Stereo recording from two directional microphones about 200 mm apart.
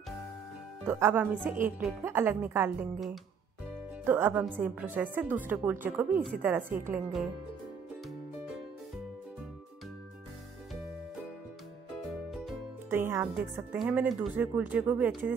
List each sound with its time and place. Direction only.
0.8 s a woman's voice: 10° right (ahead or behind)
4.0 s a woman's voice: 10° right (ahead or behind)
12.3 s speech: centre (ahead or behind)